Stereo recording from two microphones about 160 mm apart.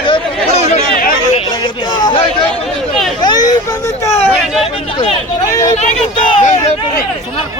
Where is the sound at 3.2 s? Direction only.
25° left (ahead or behind).